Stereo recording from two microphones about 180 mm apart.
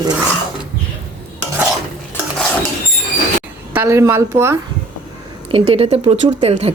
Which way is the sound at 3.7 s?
10° right (ahead or behind).